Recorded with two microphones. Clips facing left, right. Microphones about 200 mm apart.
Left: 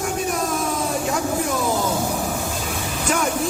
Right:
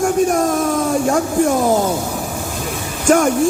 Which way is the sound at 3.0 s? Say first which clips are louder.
Right 10 dB; 50° right (ahead or behind).